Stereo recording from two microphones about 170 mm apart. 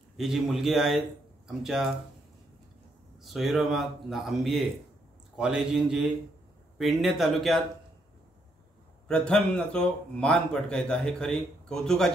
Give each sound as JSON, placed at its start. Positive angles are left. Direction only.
{"t": 0.2, "sound": "a man's voice", "side_deg": 0}
{"t": 3.2, "sound": "a man's voice", "side_deg": 0}
{"t": 9.0, "sound": "a man's voice", "side_deg": 5}